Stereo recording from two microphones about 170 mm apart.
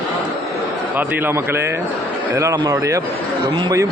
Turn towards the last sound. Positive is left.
turn(degrees=-20)  # may be behind; listen again after turning